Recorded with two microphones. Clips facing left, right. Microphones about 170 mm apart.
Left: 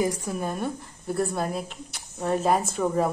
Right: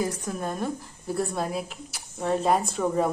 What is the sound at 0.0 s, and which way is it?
A woman's voice, 5° left (ahead or behind).